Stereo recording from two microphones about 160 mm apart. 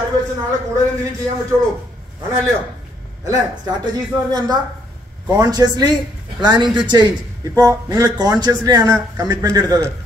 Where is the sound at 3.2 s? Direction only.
20° right (ahead or behind).